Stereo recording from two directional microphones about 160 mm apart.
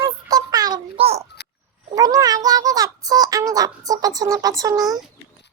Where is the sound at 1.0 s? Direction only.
40° right (ahead or behind).